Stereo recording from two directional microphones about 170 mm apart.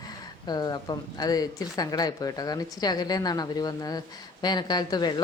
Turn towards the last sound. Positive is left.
turn(degrees=25)  # may be behind; listen again after turning